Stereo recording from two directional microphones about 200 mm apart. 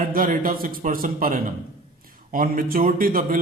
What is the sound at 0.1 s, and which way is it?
A man's voice, 45° right (ahead or behind).